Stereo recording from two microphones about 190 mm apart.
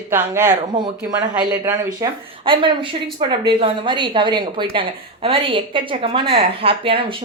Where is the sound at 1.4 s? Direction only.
10° right (ahead or behind).